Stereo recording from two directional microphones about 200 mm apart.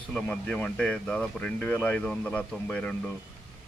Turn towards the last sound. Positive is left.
turn(degrees=5)  # may be behind; listen again after turning